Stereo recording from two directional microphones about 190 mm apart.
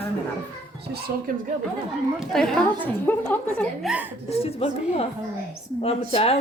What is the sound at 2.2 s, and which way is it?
A woman's voice, centre (ahead or behind).